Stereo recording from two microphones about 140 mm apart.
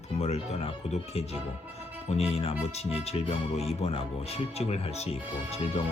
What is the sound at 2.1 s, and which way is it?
Speech, 50° left (ahead or behind).